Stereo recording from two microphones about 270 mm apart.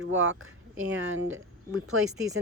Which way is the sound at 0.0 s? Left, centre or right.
Right.